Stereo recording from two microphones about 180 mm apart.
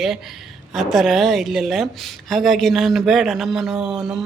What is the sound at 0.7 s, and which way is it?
A man's voice, centre (ahead or behind).